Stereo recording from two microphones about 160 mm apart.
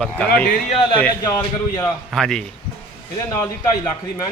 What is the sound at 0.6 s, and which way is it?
Speech, 35° left (ahead or behind).